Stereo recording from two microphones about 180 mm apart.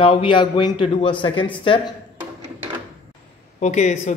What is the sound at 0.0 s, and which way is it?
A man's voice, 30° left (ahead or behind).